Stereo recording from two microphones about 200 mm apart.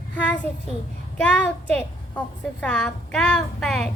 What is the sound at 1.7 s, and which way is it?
A woman's voice, 5° left (ahead or behind).